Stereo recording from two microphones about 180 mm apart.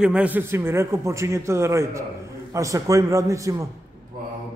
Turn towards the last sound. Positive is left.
turn(degrees=-15)  # may be behind; listen again after turning